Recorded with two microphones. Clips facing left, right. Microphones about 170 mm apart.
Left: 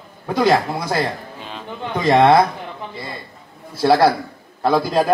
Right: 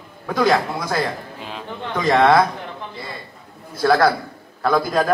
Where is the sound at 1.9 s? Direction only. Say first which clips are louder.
Left 2 dB; 25° left (ahead or behind).